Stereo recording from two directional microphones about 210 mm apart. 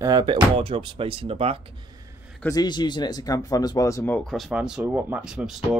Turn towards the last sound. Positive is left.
turn(degrees=-5)  # may be behind; listen again after turning